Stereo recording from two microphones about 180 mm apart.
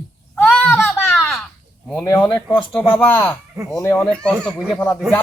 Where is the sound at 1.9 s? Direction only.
15° left (ahead or behind).